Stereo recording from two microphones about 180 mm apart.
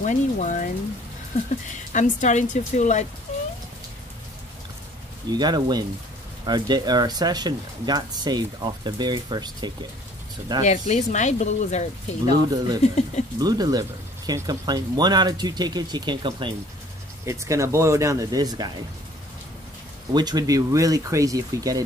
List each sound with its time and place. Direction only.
0.0 s speech: 45° left (ahead or behind)
1.9 s a woman's voice: 45° left (ahead or behind)
3.3 s rain: 40° left (ahead or behind)
5.3 s speech: 25° right (ahead or behind)
10.6 s a woman's voice: 40° left (ahead or behind)
12.4 s speech: 20° right (ahead or behind)
20.1 s speech: 25° right (ahead or behind)